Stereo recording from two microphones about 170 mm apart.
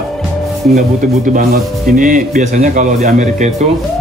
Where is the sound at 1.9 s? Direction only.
50° right (ahead or behind).